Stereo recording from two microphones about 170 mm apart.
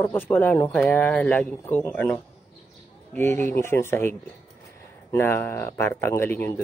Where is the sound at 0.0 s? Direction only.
10° left (ahead or behind).